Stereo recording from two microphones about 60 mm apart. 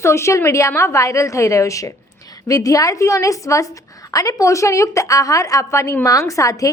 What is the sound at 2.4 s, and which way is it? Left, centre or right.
A woman's voice, left.